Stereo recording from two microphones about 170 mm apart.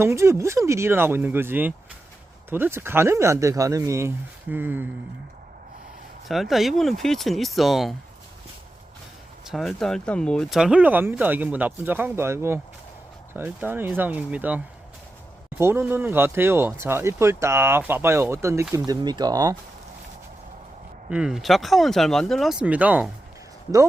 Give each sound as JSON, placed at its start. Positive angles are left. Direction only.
{"t": 0.0, "sound": "speech", "side_deg": -15}
{"t": 6.2, "sound": "speech", "side_deg": 0}
{"t": 9.5, "sound": "speech", "side_deg": 0}
{"t": 21.1, "sound": "speech", "side_deg": -5}